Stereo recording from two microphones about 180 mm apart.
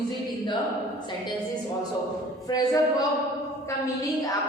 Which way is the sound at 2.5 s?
20° left (ahead or behind).